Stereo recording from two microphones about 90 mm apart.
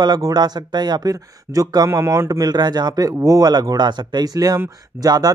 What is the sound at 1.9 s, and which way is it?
Speech, 30° right (ahead or behind).